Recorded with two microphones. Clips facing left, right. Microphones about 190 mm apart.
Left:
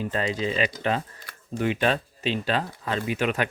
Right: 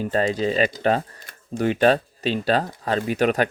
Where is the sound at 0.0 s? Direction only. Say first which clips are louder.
Right 5 dB; 40° right (ahead or behind).